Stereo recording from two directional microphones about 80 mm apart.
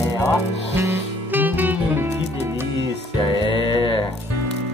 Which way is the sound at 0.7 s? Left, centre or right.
Right.